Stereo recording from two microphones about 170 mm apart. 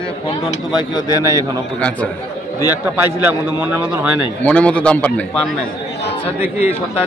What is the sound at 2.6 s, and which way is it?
A man's voice, 10° right (ahead or behind).